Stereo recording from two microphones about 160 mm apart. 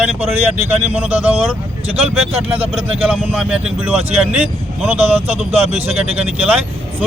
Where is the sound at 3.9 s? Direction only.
40° right (ahead or behind).